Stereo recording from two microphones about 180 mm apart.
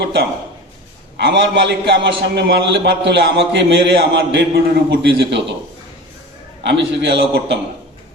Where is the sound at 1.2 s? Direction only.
75° right (ahead or behind).